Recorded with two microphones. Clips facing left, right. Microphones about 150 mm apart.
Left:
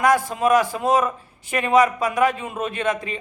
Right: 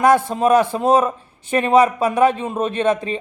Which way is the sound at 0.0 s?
30° right (ahead or behind).